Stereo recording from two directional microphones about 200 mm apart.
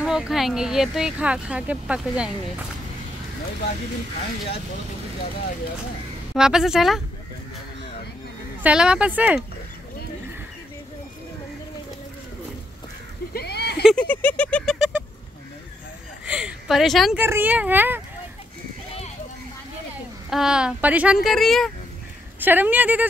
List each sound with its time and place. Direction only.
0.0 s speech: 5° right (ahead or behind)
6.3 s speech: 5° right (ahead or behind)
8.6 s speech: 5° right (ahead or behind)
13.3 s a sound: 55° left (ahead or behind)
13.8 s speech: 5° left (ahead or behind)
16.3 s speech: 5° right (ahead or behind)
20.2 s speech: 5° right (ahead or behind)
22.4 s speech: 10° right (ahead or behind)